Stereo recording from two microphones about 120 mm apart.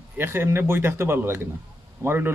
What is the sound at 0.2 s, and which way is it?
Speech, 20° right (ahead or behind).